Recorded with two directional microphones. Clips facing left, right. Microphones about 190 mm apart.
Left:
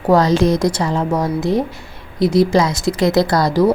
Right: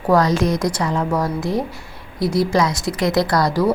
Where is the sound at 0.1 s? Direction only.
25° left (ahead or behind).